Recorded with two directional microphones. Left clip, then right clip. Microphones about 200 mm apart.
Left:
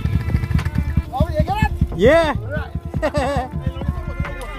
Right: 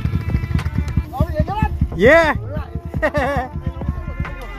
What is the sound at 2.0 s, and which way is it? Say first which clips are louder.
Speech: right 2 dB; 10° right (ahead or behind).